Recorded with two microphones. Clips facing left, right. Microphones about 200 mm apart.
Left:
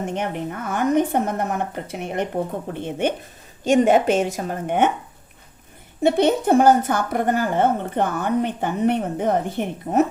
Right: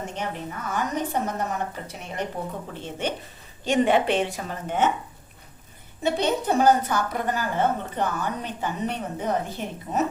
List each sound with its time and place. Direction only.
0.0 s a woman's voice: 60° left (ahead or behind)
3.6 s a woman's voice: 45° left (ahead or behind)
6.0 s a woman's voice: 55° left (ahead or behind)